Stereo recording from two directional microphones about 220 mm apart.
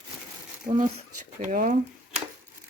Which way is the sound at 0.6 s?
35° right (ahead or behind).